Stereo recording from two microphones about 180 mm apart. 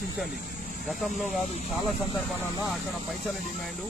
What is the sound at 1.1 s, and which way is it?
Speech, 40° left (ahead or behind).